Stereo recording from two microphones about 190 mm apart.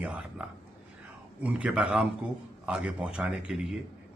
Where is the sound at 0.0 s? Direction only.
5° right (ahead or behind).